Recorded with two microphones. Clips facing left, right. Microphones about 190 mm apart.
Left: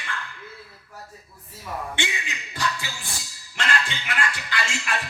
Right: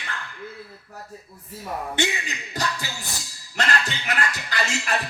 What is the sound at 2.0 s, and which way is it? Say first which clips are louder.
Speech: right 8 dB; 40° right (ahead or behind).